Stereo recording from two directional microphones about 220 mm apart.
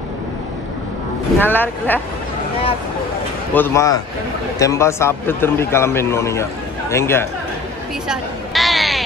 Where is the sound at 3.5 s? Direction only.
10° left (ahead or behind).